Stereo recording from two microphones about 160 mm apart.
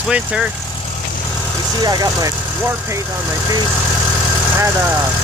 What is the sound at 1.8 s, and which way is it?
Speech, 25° right (ahead or behind).